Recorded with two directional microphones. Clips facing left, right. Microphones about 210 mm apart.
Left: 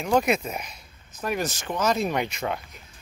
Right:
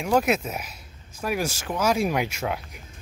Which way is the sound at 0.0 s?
5° right (ahead or behind).